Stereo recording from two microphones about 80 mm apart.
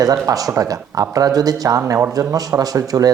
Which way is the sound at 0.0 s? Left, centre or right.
Right.